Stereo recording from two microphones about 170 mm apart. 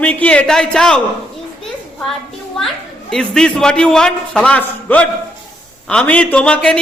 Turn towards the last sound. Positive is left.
turn(degrees=5)  # may be behind; listen again after turning